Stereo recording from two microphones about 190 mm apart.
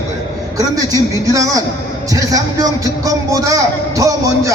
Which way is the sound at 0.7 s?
20° right (ahead or behind).